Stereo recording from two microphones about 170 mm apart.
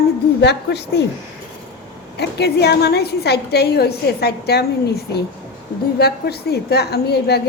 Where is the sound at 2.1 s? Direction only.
80° left.